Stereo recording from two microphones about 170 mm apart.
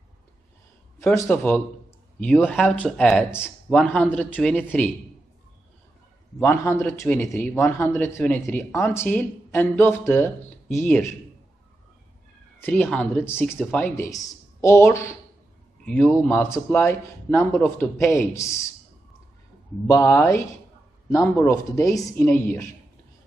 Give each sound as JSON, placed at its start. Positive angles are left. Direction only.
{"t": 0.9, "sound": "speech", "side_deg": 15}
{"t": 6.4, "sound": "speech", "side_deg": 15}
{"t": 12.6, "sound": "speech", "side_deg": 10}
{"t": 19.9, "sound": "speech", "side_deg": 15}